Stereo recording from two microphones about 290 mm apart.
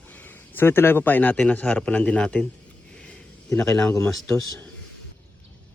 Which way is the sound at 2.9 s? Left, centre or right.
Centre.